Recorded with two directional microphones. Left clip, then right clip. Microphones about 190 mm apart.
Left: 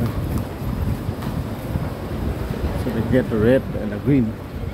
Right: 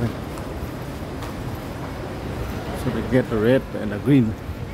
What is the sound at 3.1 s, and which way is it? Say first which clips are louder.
Speech: left 1 dB; 5° right (ahead or behind).